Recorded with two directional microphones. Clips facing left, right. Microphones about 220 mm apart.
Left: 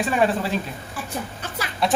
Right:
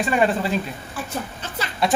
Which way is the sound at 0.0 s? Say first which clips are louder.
Right 1 dB; centre (ahead or behind).